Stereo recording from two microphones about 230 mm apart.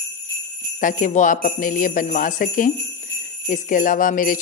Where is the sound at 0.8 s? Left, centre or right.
Left.